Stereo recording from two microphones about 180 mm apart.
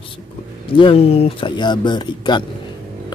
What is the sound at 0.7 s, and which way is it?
Speech, 30° left (ahead or behind).